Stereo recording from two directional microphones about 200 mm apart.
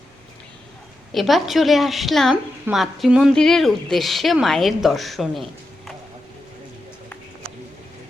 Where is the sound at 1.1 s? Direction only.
Centre (ahead or behind).